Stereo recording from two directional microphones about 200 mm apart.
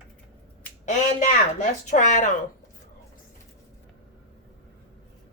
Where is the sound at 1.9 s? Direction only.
35° left (ahead or behind).